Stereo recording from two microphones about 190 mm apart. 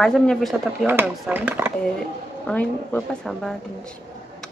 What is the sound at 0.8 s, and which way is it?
Speech, 10° right (ahead or behind).